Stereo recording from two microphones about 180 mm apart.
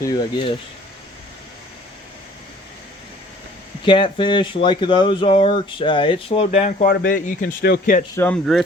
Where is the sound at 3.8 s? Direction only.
25° left (ahead or behind).